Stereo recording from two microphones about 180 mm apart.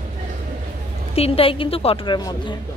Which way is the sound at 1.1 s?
35° left (ahead or behind).